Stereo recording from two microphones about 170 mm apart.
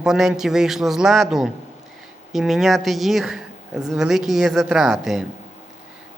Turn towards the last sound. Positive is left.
turn(degrees=0)  # may be behind; listen again after turning